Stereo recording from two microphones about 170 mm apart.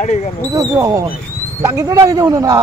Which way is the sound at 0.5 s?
20° right (ahead or behind).